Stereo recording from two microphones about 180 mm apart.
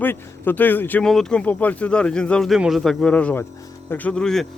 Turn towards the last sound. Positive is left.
turn(degrees=5)  # may be behind; listen again after turning